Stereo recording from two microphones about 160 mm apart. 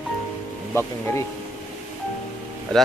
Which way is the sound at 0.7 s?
15° left (ahead or behind).